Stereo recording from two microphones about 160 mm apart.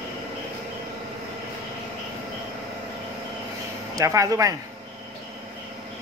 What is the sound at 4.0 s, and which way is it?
Speech, 20° right (ahead or behind).